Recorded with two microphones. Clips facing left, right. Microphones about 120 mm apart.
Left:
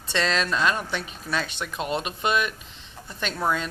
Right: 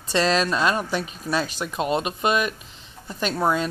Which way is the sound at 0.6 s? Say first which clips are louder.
Right 3 dB; 15° right (ahead or behind).